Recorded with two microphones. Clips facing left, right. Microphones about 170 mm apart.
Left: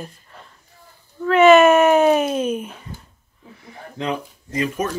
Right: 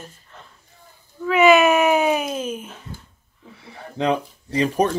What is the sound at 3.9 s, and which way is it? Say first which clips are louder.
Speech: right 4 dB; 35° right (ahead or behind).